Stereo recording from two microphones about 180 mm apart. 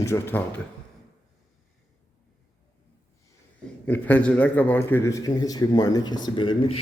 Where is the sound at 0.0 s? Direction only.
15° left (ahead or behind).